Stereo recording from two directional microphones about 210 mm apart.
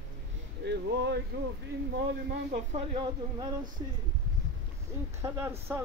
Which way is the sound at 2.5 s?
25° right (ahead or behind).